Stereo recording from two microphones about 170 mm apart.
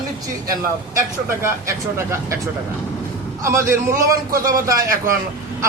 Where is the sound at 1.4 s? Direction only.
15° right (ahead or behind).